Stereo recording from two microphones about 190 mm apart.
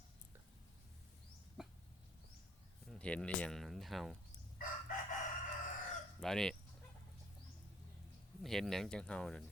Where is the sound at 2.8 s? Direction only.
5° left (ahead or behind).